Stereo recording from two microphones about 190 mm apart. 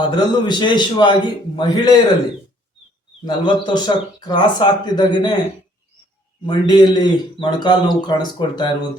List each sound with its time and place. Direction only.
0.0 s a man's voice: 25° left (ahead or behind)
3.2 s a man's voice: 25° left (ahead or behind)
6.4 s a man's voice: 25° left (ahead or behind)